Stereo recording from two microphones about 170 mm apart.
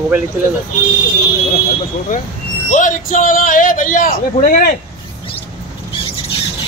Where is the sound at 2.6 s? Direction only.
50° left (ahead or behind).